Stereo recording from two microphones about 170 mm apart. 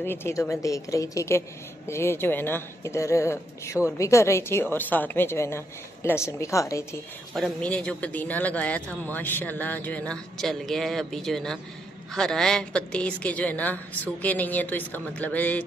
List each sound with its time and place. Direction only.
0.0 s a man's voice: 15° left (ahead or behind)
7.3 s a man's voice: centre (ahead or behind)